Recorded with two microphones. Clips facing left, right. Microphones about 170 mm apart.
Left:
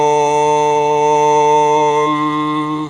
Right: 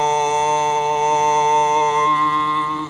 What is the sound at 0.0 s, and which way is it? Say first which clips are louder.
Music: left 6 dB; 20° left (ahead or behind).